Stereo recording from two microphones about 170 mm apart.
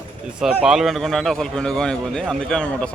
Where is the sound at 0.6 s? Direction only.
Centre (ahead or behind).